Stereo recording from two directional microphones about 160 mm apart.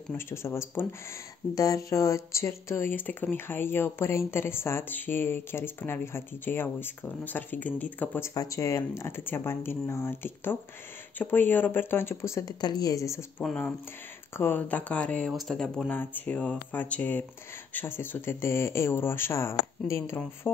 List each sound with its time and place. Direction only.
0.1 s speech: 15° left (ahead or behind)
13.4 s speech: 5° left (ahead or behind)